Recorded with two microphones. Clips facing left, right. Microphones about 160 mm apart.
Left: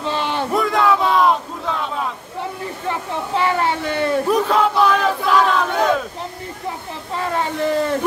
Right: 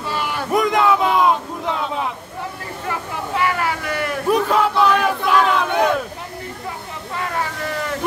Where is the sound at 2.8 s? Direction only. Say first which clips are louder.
Left 2 dB; 30° left (ahead or behind).